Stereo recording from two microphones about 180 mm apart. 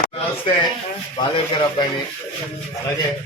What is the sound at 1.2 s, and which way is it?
Speech, 25° left (ahead or behind).